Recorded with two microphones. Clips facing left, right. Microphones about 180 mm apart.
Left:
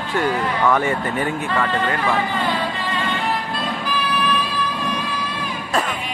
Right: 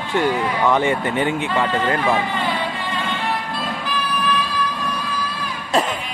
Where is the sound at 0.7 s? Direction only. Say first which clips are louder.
Right 1 dB; 20° right (ahead or behind).